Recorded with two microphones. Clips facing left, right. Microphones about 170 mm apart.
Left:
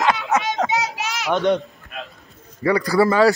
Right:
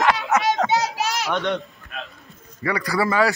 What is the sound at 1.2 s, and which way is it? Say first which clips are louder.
Speech: left 8 dB; centre (ahead or behind).